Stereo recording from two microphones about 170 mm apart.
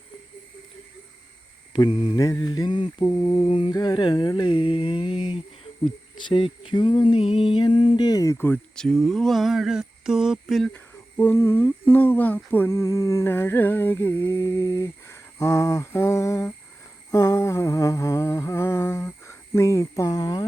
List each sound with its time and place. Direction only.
1.7 s mantra: 30° left (ahead or behind)
2.1 s a sound: 20° left (ahead or behind); by 10.7 s centre (ahead or behind)
10.7 s speech: 10° left (ahead or behind)
17.1 s humming: 20° left (ahead or behind)